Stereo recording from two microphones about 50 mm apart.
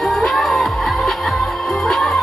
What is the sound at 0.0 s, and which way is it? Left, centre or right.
Music, centre.